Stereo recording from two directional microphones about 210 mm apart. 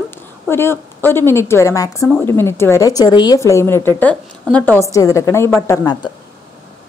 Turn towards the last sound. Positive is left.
turn(degrees=20)  # may be behind; listen again after turning